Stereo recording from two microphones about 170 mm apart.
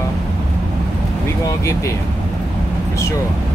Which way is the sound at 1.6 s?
20° left (ahead or behind).